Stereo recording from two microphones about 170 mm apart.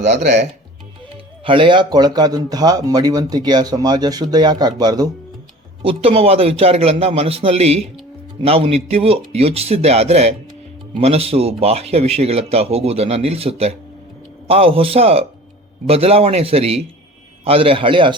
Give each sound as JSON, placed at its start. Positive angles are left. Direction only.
{"t": 0.2, "sound": "speech", "side_deg": -50}
{"t": 1.1, "sound": "speech", "side_deg": -30}
{"t": 5.8, "sound": "speech", "side_deg": -35}